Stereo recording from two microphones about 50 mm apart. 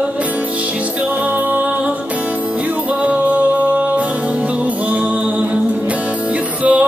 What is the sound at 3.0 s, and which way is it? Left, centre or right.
Music, right.